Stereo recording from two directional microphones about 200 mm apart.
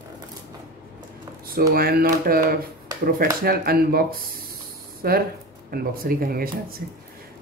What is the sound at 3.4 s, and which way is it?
Speech, 50° right (ahead or behind).